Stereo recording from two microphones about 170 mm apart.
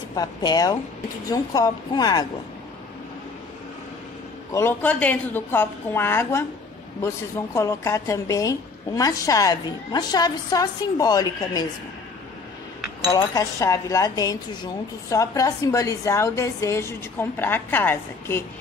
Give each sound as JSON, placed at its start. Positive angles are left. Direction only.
{"t": 0.1, "sound": "speech", "side_deg": 25}
{"t": 4.5, "sound": "a woman's voice", "side_deg": 15}
{"t": 7.5, "sound": "speech", "side_deg": 20}
{"t": 13.0, "sound": "speech", "side_deg": 20}